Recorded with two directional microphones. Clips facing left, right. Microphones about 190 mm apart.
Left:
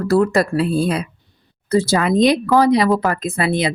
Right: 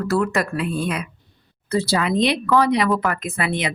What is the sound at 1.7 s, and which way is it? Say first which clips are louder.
A woman's voice: left 4 dB; 45° left (ahead or behind).